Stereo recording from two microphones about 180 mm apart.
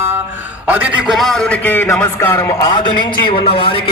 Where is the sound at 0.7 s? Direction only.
10° right (ahead or behind).